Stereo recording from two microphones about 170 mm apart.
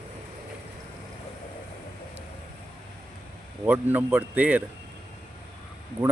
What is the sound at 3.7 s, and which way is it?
Speech, 10° right (ahead or behind).